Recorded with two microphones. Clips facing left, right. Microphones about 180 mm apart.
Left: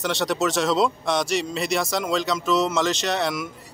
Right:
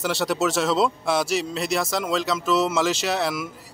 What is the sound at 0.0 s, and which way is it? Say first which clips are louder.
Speech: even; 5° right (ahead or behind).